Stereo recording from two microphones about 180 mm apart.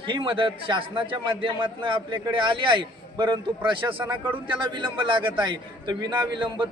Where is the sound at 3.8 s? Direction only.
15° right (ahead or behind).